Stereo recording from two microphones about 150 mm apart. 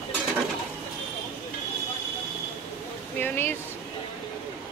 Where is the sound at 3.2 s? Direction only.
15° left (ahead or behind).